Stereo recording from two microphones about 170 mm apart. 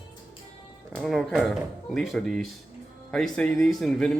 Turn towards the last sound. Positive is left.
turn(degrees=0)  # may be behind; listen again after turning